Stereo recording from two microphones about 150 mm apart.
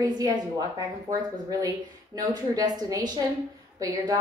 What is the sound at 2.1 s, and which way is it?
A woman's voice, 25° right (ahead or behind).